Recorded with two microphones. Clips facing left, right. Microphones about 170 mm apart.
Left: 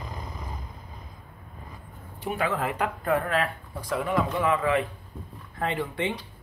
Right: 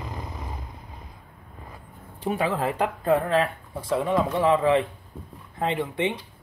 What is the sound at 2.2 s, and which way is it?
Speech, 30° right (ahead or behind).